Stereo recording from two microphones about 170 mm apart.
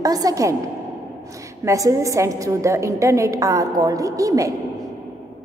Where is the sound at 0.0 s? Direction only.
20° right (ahead or behind).